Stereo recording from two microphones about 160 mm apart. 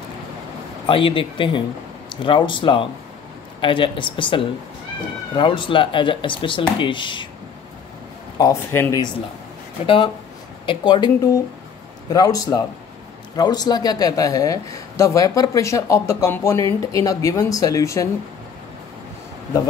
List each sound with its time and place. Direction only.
0.8 s speech: 35° left (ahead or behind)
8.4 s a man's voice: 15° left (ahead or behind)
9.8 s a man's voice: 30° left (ahead or behind)